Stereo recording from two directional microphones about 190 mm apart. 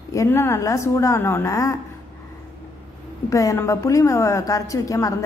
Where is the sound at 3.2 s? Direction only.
15° left (ahead or behind).